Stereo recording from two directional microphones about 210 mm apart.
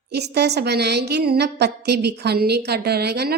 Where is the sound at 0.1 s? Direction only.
50° right (ahead or behind).